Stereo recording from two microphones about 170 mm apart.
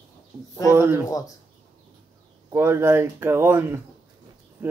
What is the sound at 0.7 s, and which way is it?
Speech, 15° right (ahead or behind).